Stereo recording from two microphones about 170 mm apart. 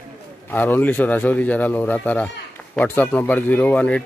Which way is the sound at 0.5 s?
10° left (ahead or behind).